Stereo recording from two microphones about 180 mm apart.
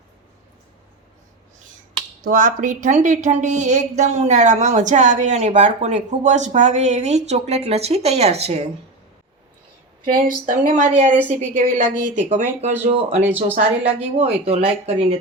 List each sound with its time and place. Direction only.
2.2 s speech: 45° right (ahead or behind)
10.1 s speech: 45° right (ahead or behind)
13.2 s speech: 10° right (ahead or behind)
13.6 s speech: 35° right (ahead or behind)